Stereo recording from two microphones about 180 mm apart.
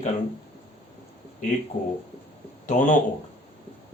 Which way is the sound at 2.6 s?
45° left (ahead or behind).